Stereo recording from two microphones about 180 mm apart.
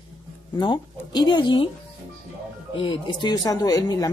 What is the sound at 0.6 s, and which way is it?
Speech, 25° left (ahead or behind).